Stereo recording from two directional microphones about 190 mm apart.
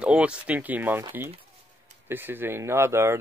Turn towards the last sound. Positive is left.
turn(degrees=-15)  # may be behind; listen again after turning